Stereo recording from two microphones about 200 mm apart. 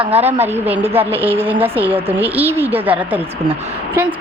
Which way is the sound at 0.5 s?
10° right (ahead or behind).